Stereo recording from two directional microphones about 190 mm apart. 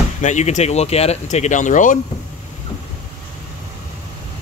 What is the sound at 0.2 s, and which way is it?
Speech, 40° left (ahead or behind).